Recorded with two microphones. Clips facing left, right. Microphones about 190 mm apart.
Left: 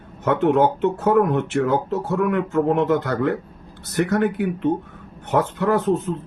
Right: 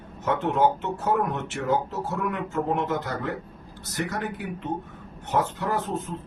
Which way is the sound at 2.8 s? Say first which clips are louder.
Left 8 dB; 65° left (ahead or behind).